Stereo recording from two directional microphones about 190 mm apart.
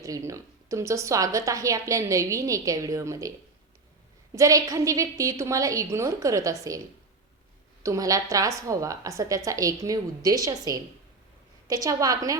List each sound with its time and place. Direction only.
0.0 s a woman's voice: 15° right (ahead or behind)